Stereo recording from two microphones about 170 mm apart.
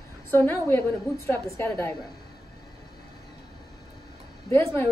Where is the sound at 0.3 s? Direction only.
15° left (ahead or behind).